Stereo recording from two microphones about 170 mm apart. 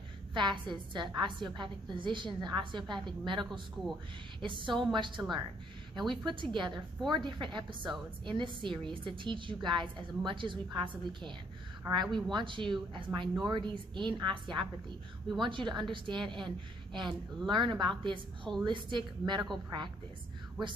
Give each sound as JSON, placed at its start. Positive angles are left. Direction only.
{"t": 0.3, "sound": "a woman's voice", "side_deg": -25}